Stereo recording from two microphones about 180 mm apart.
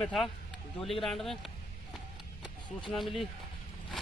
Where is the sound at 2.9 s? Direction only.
Centre (ahead or behind).